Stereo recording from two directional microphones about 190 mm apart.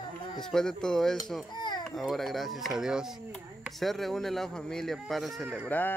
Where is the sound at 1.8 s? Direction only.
Centre (ahead or behind).